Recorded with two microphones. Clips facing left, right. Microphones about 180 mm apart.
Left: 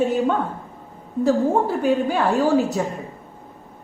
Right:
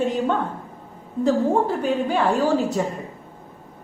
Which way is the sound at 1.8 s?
5° left (ahead or behind).